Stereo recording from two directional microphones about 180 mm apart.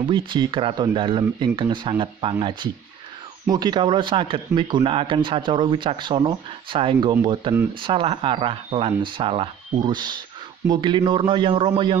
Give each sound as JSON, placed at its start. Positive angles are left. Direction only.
{"t": 0.0, "sound": "speech", "side_deg": -25}
{"t": 3.4, "sound": "speech", "side_deg": -25}